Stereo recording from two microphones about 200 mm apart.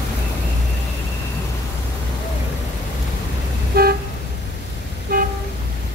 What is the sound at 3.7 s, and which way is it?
Toot, 50° right (ahead or behind).